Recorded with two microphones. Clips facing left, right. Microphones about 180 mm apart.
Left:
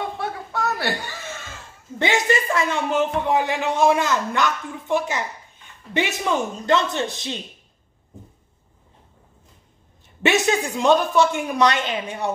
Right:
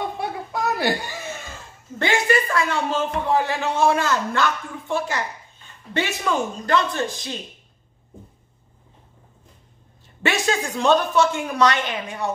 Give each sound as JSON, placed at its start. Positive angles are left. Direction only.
{"t": 0.2, "sound": "chuckle", "side_deg": -10}
{"t": 2.0, "sound": "speech", "side_deg": 20}
{"t": 10.2, "sound": "speech", "side_deg": 20}